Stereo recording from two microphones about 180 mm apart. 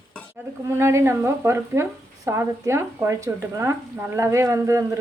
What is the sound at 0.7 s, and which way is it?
Speech, 15° right (ahead or behind).